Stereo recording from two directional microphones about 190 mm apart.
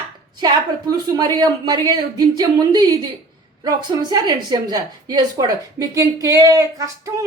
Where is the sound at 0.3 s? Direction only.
20° right (ahead or behind).